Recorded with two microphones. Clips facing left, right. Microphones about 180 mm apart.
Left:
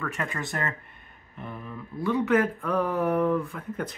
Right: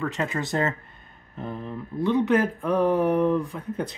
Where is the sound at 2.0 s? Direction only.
20° right (ahead or behind).